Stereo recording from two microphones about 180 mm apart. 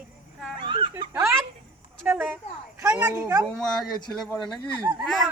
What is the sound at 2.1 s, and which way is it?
A woman's voice, 10° right (ahead or behind).